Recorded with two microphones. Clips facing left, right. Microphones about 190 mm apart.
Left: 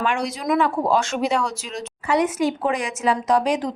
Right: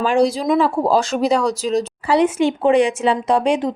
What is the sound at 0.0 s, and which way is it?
Speech, 35° right (ahead or behind).